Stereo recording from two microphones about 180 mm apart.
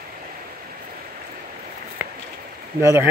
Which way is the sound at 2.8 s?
15° right (ahead or behind).